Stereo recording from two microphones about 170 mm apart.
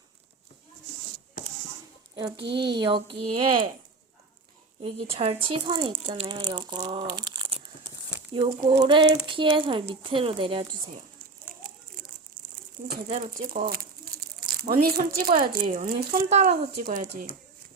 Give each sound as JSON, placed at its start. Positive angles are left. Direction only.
{"t": 2.1, "sound": "speech", "side_deg": -25}
{"t": 4.8, "sound": "speech", "side_deg": -35}
{"t": 12.0, "sound": "crumpling", "side_deg": -55}
{"t": 13.1, "sound": "speech", "side_deg": -45}